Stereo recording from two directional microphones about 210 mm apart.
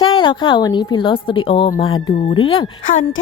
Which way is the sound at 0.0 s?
25° left (ahead or behind).